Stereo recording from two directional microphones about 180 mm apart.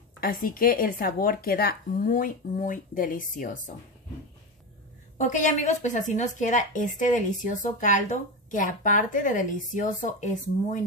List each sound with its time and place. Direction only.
0.2 s a woman's voice: 55° left (ahead or behind)
5.1 s a woman's voice: 45° left (ahead or behind)